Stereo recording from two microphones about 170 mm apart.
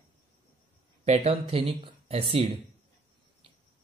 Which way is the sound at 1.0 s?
40° right (ahead or behind).